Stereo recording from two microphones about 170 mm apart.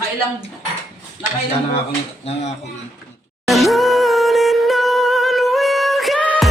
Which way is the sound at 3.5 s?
Centre (ahead or behind).